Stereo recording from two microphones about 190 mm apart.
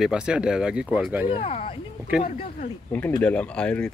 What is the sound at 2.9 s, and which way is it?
Speech, 10° left (ahead or behind).